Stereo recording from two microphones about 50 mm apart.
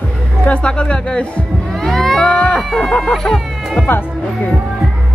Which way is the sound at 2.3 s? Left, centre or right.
Left.